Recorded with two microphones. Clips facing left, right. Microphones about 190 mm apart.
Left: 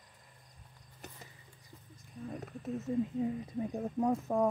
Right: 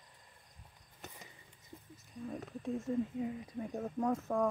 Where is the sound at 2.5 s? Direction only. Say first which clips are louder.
Even; 5° left (ahead or behind).